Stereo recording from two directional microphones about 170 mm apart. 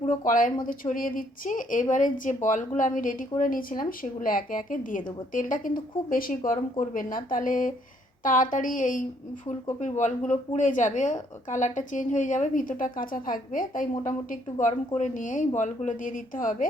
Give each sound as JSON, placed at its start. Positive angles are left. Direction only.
{"t": 0.3, "sound": "speech", "side_deg": 50}